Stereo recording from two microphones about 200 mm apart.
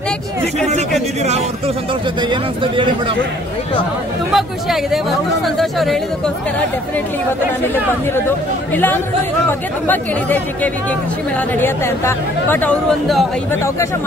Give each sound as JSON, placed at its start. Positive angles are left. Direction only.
{"t": 2.2, "sound": "speech", "side_deg": -25}
{"t": 4.3, "sound": "speech", "side_deg": 0}
{"t": 7.6, "sound": "speech", "side_deg": 10}
{"t": 13.5, "sound": "speech", "side_deg": 15}